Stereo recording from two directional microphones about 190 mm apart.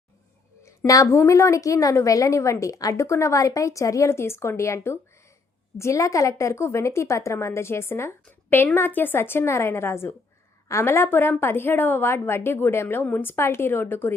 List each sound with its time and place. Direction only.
0.6 s a woman's voice: 15° left (ahead or behind)